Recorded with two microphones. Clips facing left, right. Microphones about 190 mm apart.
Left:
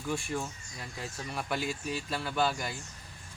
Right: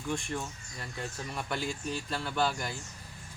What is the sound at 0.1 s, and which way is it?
Speech, 5° left (ahead or behind).